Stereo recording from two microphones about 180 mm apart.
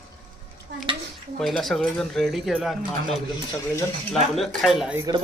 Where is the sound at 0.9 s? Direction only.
30° right (ahead or behind).